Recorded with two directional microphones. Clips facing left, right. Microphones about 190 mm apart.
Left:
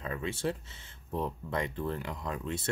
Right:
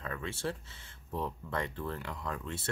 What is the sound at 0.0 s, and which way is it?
Speech, 20° left (ahead or behind).